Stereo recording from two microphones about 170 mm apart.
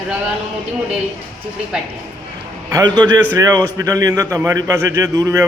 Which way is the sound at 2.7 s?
25° right (ahead or behind).